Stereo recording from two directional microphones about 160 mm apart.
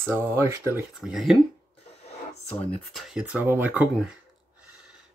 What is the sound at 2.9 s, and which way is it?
Speech, 5° right (ahead or behind).